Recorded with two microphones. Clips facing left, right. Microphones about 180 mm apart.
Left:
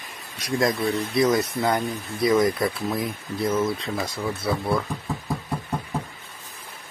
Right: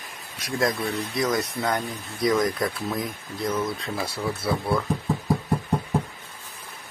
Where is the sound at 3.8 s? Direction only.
10° right (ahead or behind).